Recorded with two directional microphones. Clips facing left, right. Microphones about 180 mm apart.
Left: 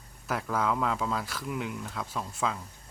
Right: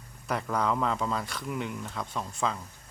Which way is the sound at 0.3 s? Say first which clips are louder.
Right 1 dB; 5° left (ahead or behind).